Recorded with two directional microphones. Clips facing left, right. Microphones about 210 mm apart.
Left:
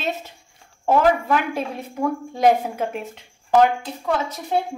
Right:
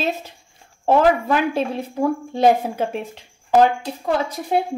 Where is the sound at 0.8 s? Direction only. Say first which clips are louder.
Right 2 dB; 30° right (ahead or behind).